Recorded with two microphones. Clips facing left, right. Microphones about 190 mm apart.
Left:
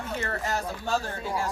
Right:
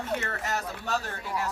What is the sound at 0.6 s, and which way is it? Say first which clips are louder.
Speech: left 3 dB; 30° left (ahead or behind).